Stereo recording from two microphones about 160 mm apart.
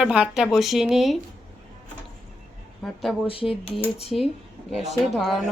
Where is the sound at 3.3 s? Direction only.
35° left (ahead or behind).